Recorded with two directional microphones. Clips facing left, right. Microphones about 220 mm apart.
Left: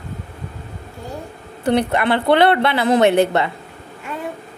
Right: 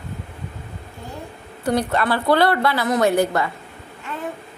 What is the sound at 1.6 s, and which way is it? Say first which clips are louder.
A woman's voice: left 3 dB; 25° left (ahead or behind).